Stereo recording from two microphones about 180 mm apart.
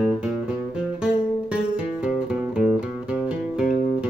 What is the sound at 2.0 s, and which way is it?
Music, 5° right (ahead or behind).